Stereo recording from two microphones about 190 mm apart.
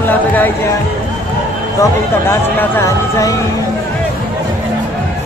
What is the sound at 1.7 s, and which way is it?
Speech, 15° left (ahead or behind).